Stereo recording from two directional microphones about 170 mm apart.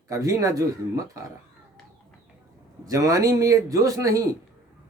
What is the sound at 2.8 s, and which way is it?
Speech, 20° right (ahead or behind).